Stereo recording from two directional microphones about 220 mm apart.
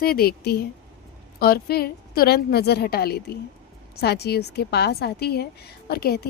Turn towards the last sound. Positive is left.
turn(degrees=45)  # may be behind; listen again after turning